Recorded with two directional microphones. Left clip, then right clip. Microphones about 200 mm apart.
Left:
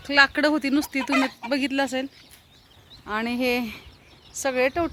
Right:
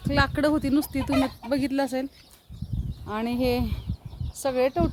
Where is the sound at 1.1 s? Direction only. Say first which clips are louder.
Left 2 dB; 25° left (ahead or behind).